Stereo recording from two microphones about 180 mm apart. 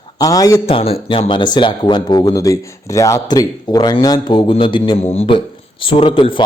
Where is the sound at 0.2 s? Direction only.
20° left (ahead or behind).